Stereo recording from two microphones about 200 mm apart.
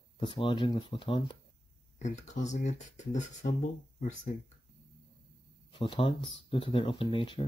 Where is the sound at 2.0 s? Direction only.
35° left (ahead or behind).